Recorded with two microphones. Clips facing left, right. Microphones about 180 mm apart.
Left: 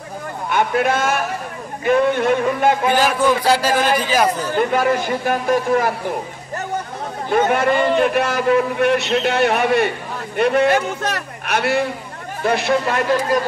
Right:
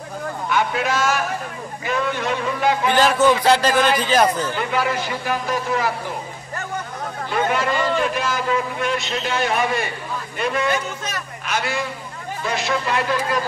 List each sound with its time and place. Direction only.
0.5 s a man's voice: 55° left (ahead or behind)
2.9 s a man's voice: 10° left (ahead or behind)
4.6 s a man's voice: 50° left (ahead or behind)
7.2 s a man's voice: 50° left (ahead or behind)